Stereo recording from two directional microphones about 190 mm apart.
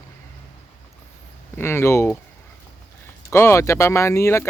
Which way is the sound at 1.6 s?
15° left (ahead or behind).